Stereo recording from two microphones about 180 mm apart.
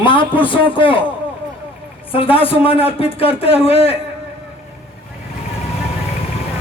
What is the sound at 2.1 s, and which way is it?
Speech, 30° left (ahead or behind).